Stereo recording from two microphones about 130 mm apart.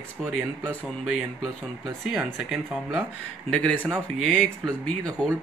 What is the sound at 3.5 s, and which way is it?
Speech, 5° left (ahead or behind).